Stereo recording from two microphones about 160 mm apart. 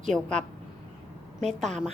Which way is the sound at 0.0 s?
5° left (ahead or behind).